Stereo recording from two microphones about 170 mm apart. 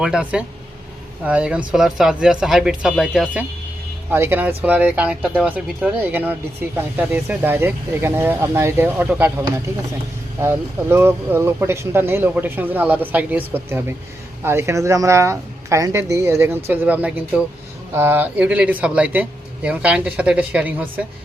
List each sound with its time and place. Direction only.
0.0 s speech: 5° right (ahead or behind)
4.1 s speech: 15° right (ahead or behind)
10.4 s speech: 15° right (ahead or behind)